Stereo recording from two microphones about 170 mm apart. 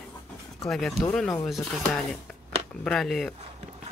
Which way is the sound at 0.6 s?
Centre (ahead or behind).